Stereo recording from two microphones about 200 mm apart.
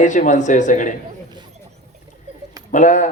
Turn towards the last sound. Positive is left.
turn(degrees=40)  # may be behind; listen again after turning